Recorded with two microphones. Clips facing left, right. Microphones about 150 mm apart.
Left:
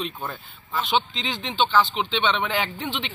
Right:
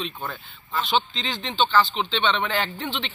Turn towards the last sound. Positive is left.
turn(degrees=5)  # may be behind; listen again after turning